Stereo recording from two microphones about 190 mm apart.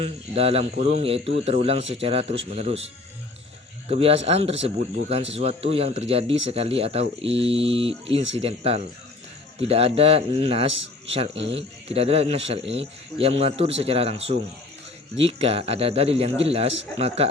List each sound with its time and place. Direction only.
0.0 s speech: 30° right (ahead or behind)
3.8 s a man's voice: 30° right (ahead or behind)